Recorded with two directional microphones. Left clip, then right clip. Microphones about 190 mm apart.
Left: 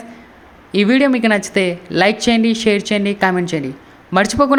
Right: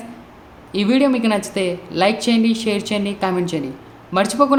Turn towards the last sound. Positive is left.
turn(degrees=30)  # may be behind; listen again after turning